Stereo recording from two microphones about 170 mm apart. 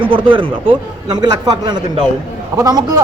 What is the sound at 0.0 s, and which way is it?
A man's voice, 30° right (ahead or behind).